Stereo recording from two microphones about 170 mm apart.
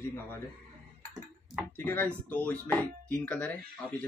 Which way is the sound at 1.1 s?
Centre (ahead or behind).